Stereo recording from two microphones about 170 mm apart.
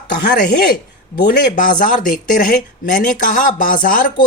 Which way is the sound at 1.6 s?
50° left (ahead or behind).